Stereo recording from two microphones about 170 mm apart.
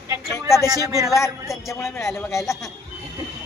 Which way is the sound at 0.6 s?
20° right (ahead or behind).